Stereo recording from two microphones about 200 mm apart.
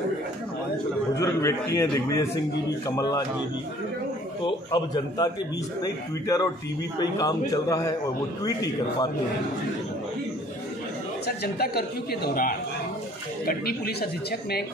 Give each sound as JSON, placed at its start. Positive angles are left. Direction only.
{"t": 1.1, "sound": "a man's voice", "side_deg": 15}
{"t": 4.6, "sound": "a man's voice", "side_deg": 20}
{"t": 11.2, "sound": "speech", "side_deg": 50}